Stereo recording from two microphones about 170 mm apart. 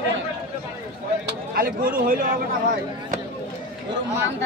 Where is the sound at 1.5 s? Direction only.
60° right (ahead or behind).